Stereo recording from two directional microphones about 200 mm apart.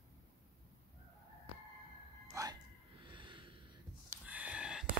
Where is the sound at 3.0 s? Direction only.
25° right (ahead or behind).